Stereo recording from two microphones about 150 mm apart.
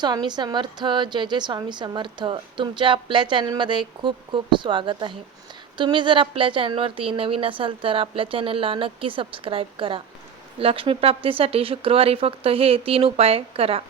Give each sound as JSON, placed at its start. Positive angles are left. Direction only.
{"t": 0.0, "sound": "a woman's voice", "side_deg": -30}